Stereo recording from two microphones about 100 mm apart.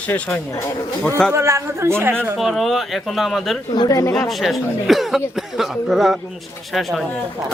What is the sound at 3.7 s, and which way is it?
Speech, 45° left (ahead or behind).